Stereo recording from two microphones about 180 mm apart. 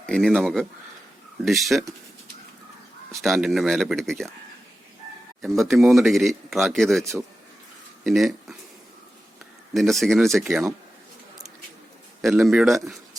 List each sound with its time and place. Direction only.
0.0 s speech: 5° left (ahead or behind)
3.2 s speech: centre (ahead or behind)
5.5 s speech: centre (ahead or behind)
8.0 s speech: centre (ahead or behind)
9.7 s speech: centre (ahead or behind)
10.5 s speech: 10° right (ahead or behind)
12.2 s speech: 5° right (ahead or behind)